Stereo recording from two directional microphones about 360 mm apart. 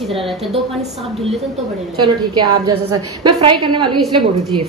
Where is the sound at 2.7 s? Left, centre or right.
Right.